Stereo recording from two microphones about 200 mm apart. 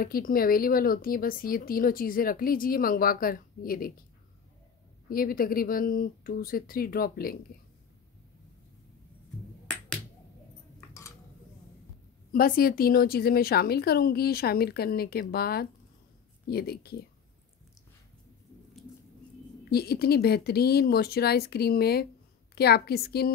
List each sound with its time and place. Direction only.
0.0 s speech: 45° left (ahead or behind)
5.1 s speech: 45° left (ahead or behind)
10.9 s cutlery: 15° left (ahead or behind)
12.3 s speech: 45° left (ahead or behind)
19.7 s speech: 50° left (ahead or behind)